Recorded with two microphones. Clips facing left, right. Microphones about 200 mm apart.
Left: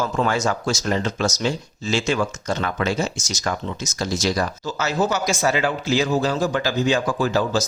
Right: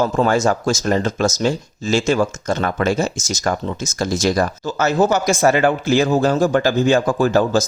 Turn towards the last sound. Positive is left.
turn(degrees=-50)  # may be behind; listen again after turning